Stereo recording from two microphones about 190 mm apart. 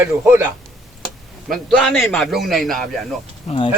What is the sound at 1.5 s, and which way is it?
A man's voice, centre (ahead or behind).